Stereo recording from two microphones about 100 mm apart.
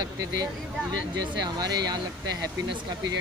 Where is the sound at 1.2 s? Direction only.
40° right (ahead or behind).